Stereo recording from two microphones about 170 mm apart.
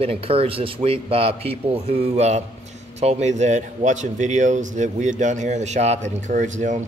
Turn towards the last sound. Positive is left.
turn(degrees=-45)  # may be behind; listen again after turning